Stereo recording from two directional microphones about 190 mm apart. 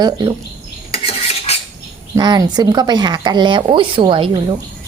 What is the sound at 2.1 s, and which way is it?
Speech, 20° right (ahead or behind).